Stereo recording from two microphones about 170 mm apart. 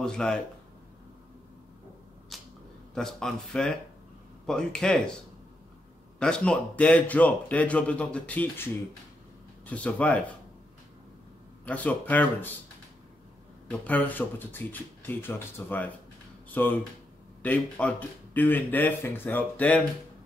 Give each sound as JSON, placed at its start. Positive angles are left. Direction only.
{"t": 0.0, "sound": "speech", "side_deg": 5}
{"t": 2.3, "sound": "a sound", "side_deg": 0}
{"t": 2.9, "sound": "speech", "side_deg": 5}
{"t": 6.1, "sound": "a man's voice", "side_deg": 5}
{"t": 9.7, "sound": "a man's voice", "side_deg": 10}
{"t": 11.6, "sound": "a man's voice", "side_deg": 10}
{"t": 13.7, "sound": "a man's voice", "side_deg": 10}